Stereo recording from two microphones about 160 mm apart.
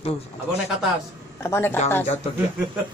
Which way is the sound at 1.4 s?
15° left (ahead or behind).